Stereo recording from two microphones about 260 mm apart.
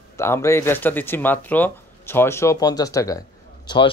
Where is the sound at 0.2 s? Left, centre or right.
Centre.